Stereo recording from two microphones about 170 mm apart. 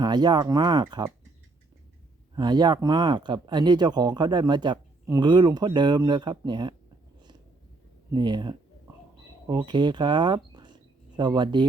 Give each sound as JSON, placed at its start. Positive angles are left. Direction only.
{"t": 0.0, "sound": "speech", "side_deg": -25}
{"t": 2.3, "sound": "speech", "side_deg": -25}
{"t": 8.1, "sound": "speech", "side_deg": -25}